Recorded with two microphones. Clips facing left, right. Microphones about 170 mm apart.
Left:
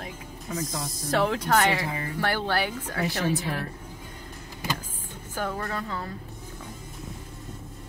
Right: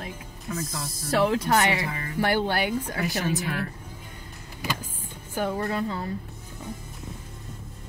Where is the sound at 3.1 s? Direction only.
30° left (ahead or behind).